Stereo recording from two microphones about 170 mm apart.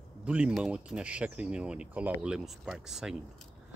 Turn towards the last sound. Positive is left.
turn(degrees=-5)  # may be behind; listen again after turning